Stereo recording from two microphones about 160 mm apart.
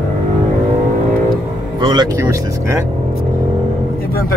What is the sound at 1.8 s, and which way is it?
Speech, 30° right (ahead or behind).